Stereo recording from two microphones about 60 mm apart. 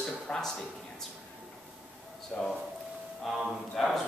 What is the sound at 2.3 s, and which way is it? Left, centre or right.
Speech, centre.